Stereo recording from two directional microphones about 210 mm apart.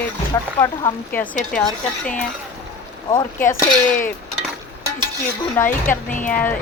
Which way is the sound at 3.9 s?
40° left (ahead or behind).